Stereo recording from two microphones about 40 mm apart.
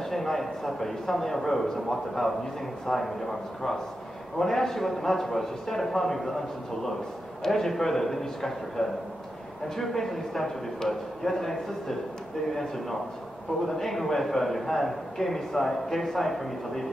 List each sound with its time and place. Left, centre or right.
0.1 s a man's voice: centre
13.7 s a man's voice: centre